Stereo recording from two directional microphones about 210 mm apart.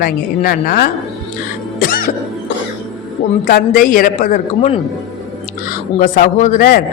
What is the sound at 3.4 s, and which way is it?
A man's voice, 40° left (ahead or behind).